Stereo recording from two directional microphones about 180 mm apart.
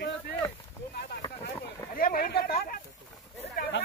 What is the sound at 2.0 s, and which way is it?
Speech, 50° left (ahead or behind).